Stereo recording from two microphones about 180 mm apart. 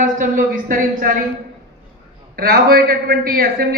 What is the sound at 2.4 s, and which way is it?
Speech, 60° right (ahead or behind).